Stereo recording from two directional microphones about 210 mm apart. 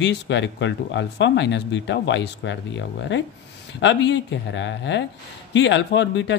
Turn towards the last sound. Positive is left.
turn(degrees=55)  # may be behind; listen again after turning